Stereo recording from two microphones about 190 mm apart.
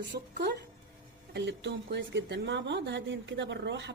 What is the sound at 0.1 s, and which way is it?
A woman's voice, 50° right (ahead or behind).